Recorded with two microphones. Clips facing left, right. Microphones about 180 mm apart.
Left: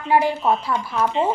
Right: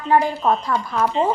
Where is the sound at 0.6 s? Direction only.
35° right (ahead or behind).